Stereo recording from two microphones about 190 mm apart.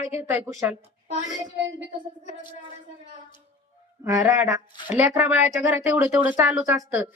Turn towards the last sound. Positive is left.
turn(degrees=-10)  # may be behind; listen again after turning